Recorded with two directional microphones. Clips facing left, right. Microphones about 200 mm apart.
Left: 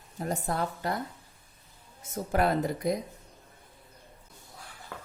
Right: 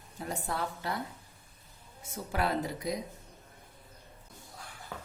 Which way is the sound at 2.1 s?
45° left (ahead or behind).